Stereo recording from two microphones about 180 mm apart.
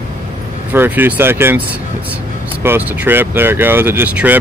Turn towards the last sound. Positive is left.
turn(degrees=-10)  # may be behind; listen again after turning